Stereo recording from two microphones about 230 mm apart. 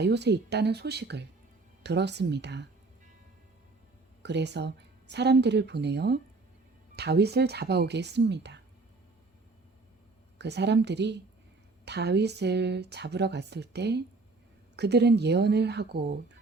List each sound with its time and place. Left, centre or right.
0.0 s speech: right
4.2 s speech: right
10.3 s speech: right